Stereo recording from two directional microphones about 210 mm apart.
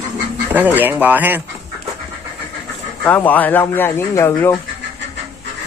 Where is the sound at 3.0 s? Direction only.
10° left (ahead or behind).